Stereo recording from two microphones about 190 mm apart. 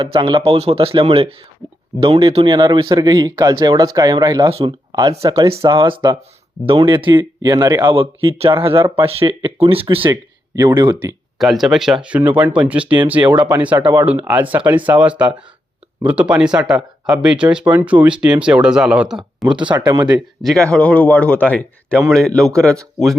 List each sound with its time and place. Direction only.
0.0 s speech: 25° right (ahead or behind)
11.3 s speech: centre (ahead or behind)
19.5 s speech: 25° right (ahead or behind)
20.4 s a man's voice: 5° left (ahead or behind)